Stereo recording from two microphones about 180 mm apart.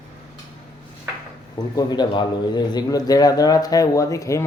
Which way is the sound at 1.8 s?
25° left (ahead or behind).